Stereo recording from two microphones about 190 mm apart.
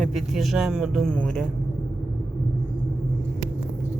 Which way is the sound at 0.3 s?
Centre (ahead or behind).